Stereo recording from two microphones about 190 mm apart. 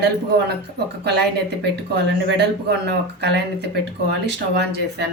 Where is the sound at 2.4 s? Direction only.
60° right (ahead or behind).